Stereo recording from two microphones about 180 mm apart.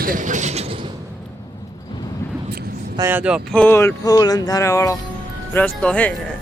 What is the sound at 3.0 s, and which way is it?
Speech, 10° right (ahead or behind).